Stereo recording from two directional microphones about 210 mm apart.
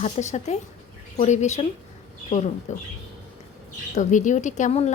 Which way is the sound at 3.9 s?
35° left (ahead or behind).